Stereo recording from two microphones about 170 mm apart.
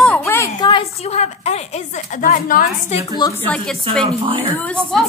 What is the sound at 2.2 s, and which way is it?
Speech, 55° left (ahead or behind).